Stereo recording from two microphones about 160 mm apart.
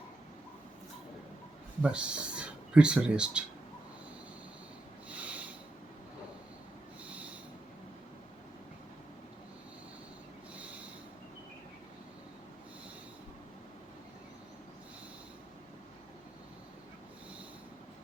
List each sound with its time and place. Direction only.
1.8 s speech: 5° right (ahead or behind)
5.0 s snort: 10° right (ahead or behind)